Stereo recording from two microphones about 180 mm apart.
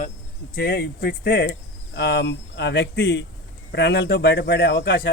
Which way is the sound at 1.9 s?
75° left (ahead or behind).